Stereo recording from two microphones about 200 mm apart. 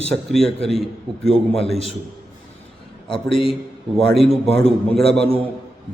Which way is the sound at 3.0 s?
25° left (ahead or behind).